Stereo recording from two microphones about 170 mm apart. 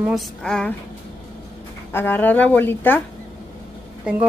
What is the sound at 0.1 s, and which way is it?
Speech, centre (ahead or behind).